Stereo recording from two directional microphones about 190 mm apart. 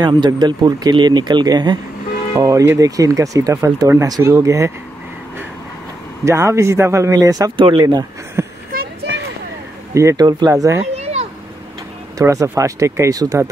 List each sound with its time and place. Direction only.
0.0 s speech: 25° right (ahead or behind)
6.2 s speech: 15° right (ahead or behind)
8.7 s a sound: 65° right (ahead or behind)
9.9 s speech: 15° right (ahead or behind)
11.0 s a sound: 35° right (ahead or behind)
12.2 s speech: 15° right (ahead or behind)